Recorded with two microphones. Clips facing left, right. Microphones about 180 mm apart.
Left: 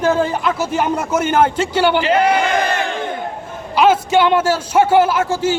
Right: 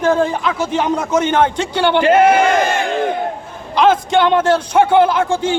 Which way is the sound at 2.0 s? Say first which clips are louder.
Right 4 dB; 50° right (ahead or behind).